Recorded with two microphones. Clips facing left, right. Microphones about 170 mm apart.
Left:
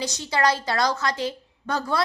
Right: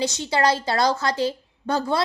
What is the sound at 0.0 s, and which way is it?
A woman's voice, 25° right (ahead or behind).